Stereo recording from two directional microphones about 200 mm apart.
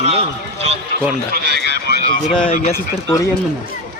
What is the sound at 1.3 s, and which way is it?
Speech, 50° right (ahead or behind).